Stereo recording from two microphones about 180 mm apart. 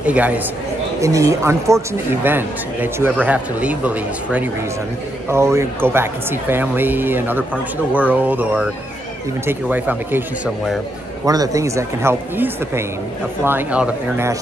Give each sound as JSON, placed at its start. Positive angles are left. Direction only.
{"t": 0.0, "sound": "speech", "side_deg": -10}
{"t": 11.2, "sound": "speech", "side_deg": -20}